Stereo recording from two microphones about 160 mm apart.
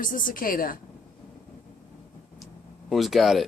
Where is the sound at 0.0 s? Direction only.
60° left (ahead or behind).